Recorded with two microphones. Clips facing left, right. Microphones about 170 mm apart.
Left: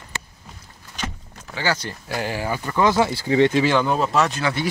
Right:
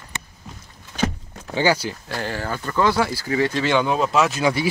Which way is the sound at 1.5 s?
20° right (ahead or behind).